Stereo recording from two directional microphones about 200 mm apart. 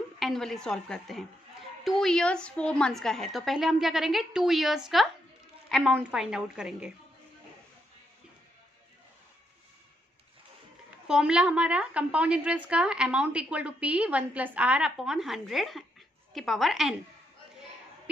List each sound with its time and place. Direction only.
0.2 s a woman's voice: centre (ahead or behind)
11.1 s a woman's voice: 5° right (ahead or behind)